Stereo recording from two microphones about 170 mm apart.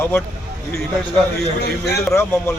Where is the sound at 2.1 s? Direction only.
15° left (ahead or behind).